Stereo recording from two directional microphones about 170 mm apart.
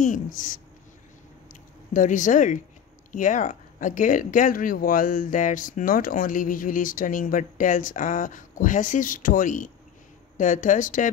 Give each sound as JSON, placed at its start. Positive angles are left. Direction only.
{"t": 0.0, "sound": "speech", "side_deg": 50}